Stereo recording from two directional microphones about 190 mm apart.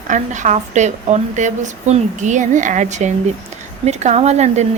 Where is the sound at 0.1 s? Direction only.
40° right (ahead or behind).